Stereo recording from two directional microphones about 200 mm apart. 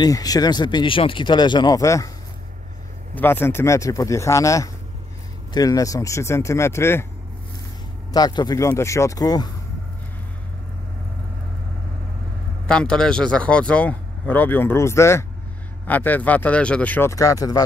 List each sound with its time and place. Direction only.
0.0 s speech: 20° left (ahead or behind)
3.2 s speech: 10° left (ahead or behind)
8.1 s speech: 20° left (ahead or behind)
12.6 s speech: 5° left (ahead or behind)